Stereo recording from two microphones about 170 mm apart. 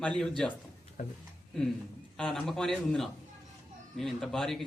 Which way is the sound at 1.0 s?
50° left (ahead or behind).